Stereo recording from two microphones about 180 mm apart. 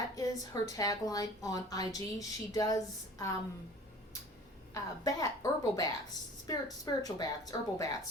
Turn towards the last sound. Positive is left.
turn(degrees=20)  # may be behind; listen again after turning